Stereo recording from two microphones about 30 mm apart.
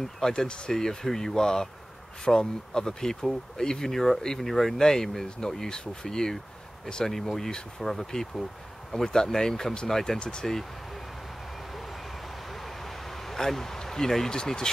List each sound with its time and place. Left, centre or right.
0.2 s speech: centre
10.1 s speech: left
12.6 s vehicle: centre
13.4 s speech: centre